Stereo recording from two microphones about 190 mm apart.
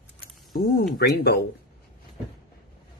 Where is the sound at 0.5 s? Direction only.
50° left (ahead or behind).